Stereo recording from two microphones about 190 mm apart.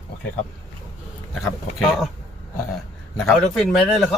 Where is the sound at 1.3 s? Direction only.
Centre (ahead or behind).